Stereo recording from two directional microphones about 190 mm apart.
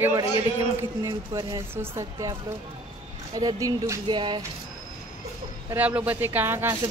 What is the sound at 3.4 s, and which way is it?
Speech, 20° right (ahead or behind).